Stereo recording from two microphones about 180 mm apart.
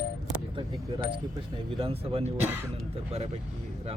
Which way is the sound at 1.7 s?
30° right (ahead or behind).